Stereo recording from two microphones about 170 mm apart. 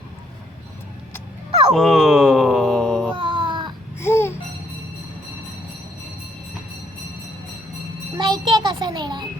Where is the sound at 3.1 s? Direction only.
30° right (ahead or behind).